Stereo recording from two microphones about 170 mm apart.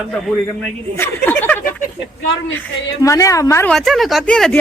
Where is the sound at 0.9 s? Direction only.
15° left (ahead or behind).